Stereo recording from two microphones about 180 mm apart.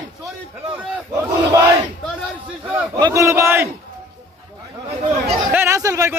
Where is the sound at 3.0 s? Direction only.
15° right (ahead or behind).